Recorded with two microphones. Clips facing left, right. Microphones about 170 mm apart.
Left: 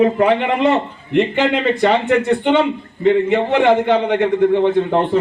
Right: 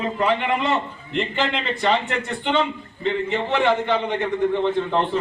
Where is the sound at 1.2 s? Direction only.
10° left (ahead or behind).